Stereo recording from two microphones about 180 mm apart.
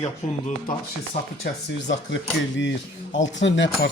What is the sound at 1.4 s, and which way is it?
Speech, 80° left.